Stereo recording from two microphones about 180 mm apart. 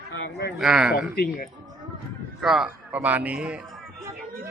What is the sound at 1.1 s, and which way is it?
Speech, 60° left (ahead or behind).